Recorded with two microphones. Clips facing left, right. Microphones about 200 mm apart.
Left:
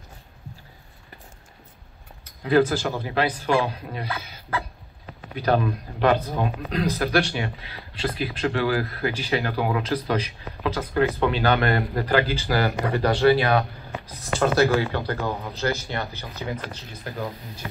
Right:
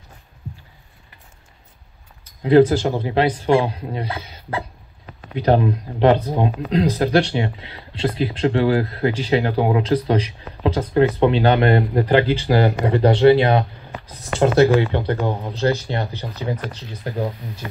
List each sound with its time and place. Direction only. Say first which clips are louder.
2.7 s speech: right 6 dB; 25° right (ahead or behind)